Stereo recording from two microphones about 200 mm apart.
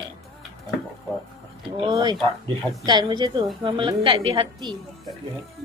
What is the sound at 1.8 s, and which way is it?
A woman's voice, 20° right (ahead or behind).